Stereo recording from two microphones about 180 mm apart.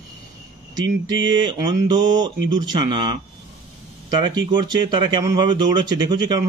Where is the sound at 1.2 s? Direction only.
25° right (ahead or behind).